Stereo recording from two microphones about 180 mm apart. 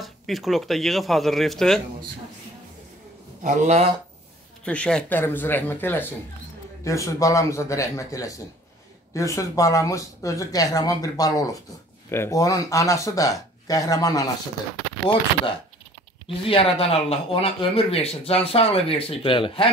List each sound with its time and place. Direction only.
0.0 s speech: centre (ahead or behind)
3.4 s speech: 40° right (ahead or behind)
4.6 s a man's voice: 5° left (ahead or behind)
16.3 s speech: 30° left (ahead or behind)